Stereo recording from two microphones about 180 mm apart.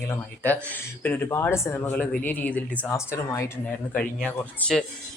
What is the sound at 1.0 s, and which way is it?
Speech, 10° left (ahead or behind).